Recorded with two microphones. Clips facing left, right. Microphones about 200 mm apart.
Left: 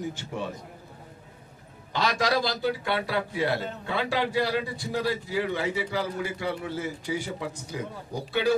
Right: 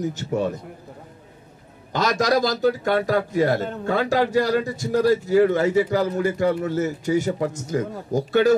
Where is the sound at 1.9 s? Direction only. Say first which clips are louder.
Right 6 dB; 45° right (ahead or behind).